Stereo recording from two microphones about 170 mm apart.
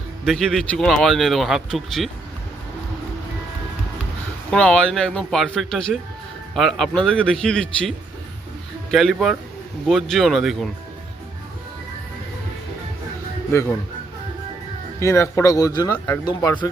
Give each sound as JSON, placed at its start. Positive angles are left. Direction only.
{"t": 0.3, "sound": "speech", "side_deg": 0}
{"t": 4.5, "sound": "speech", "side_deg": 5}
{"t": 13.5, "sound": "speech", "side_deg": 15}
{"t": 14.9, "sound": "speech", "side_deg": 15}